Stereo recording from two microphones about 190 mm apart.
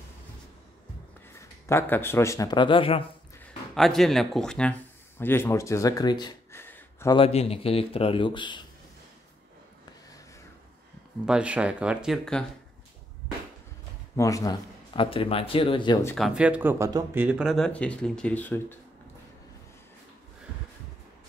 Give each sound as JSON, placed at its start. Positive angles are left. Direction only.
{"t": 1.4, "sound": "speech", "side_deg": 15}
{"t": 3.7, "sound": "speech", "side_deg": 0}
{"t": 7.2, "sound": "a man's voice", "side_deg": 30}
{"t": 11.2, "sound": "speech", "side_deg": -5}
{"t": 14.1, "sound": "a man's voice", "side_deg": 15}
{"t": 16.2, "sound": "speech", "side_deg": -5}